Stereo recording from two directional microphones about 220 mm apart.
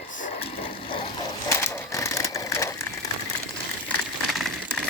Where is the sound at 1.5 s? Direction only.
10° left (ahead or behind).